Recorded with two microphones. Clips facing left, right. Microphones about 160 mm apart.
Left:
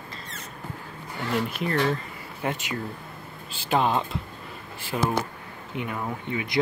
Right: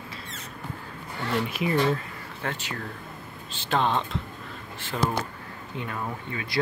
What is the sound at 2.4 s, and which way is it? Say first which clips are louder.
Speech: left 4 dB; 15° left (ahead or behind).